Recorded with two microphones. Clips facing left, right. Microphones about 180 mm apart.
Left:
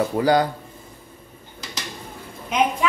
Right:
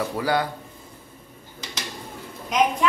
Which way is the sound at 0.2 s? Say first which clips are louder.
Left 6 dB; 30° left (ahead or behind).